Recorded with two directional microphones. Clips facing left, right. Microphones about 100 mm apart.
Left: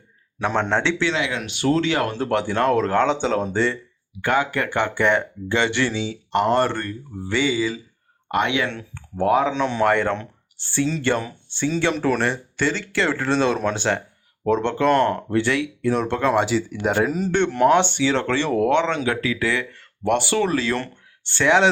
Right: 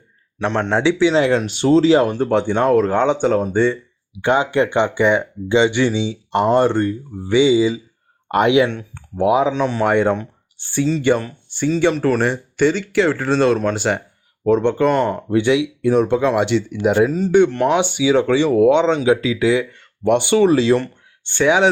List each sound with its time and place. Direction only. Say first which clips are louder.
0.3 s speech: right 3 dB; centre (ahead or behind)
1.1 s speech: right 9 dB; 35° right (ahead or behind)
2.0 s speech: right 5 dB; 15° right (ahead or behind)
4.2 s speech: right 5 dB; 25° right (ahead or behind)
8.6 s speech: right 6 dB; 10° right (ahead or behind)
15.4 s speech: right 8 dB; 15° right (ahead or behind)
21.3 s speech: right 2 dB; 10° right (ahead or behind)